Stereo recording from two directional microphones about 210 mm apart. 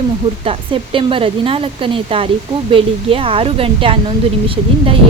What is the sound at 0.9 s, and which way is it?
Speech, 25° right (ahead or behind).